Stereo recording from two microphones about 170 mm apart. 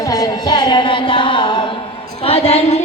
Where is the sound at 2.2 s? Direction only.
35° left (ahead or behind).